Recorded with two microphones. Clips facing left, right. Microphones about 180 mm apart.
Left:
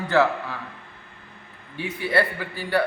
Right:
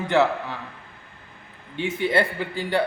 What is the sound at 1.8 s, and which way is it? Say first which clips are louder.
A man's voice: right 1 dB; 20° right (ahead or behind).